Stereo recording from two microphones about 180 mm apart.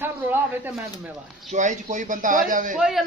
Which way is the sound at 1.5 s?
45° right (ahead or behind).